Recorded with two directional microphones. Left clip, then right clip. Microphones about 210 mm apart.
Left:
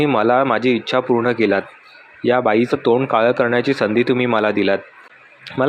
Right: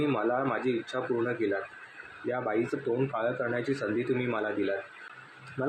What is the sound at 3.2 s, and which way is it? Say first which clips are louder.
Speech: left 15 dB; 40° left (ahead or behind).